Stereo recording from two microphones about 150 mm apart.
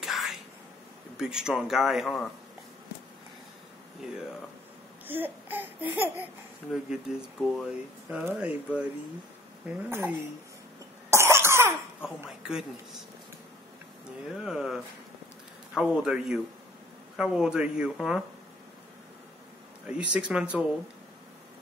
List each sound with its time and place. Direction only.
0.0 s a sound: centre (ahead or behind)
1.1 s speech: 5° right (ahead or behind)
5.0 s babbling: 15° right (ahead or behind)
6.7 s speech: 5° right (ahead or behind)
11.1 s cough: 20° right (ahead or behind)
12.3 s speech: 5° right (ahead or behind)
14.4 s speech: 5° right (ahead or behind)
19.9 s speech: 5° right (ahead or behind)